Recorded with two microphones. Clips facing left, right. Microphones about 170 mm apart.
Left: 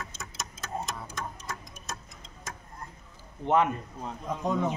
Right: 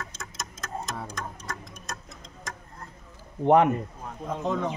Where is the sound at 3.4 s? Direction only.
55° right (ahead or behind).